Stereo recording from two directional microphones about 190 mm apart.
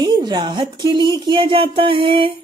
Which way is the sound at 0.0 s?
25° right (ahead or behind).